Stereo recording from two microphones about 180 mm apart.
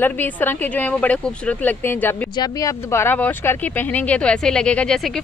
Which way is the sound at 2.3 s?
20° left (ahead or behind).